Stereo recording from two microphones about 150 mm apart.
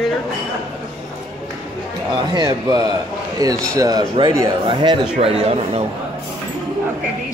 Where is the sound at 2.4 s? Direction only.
25° right (ahead or behind); by 5.8 s 40° right (ahead or behind).